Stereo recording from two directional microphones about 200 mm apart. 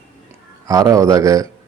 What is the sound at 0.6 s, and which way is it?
Speech, 15° right (ahead or behind).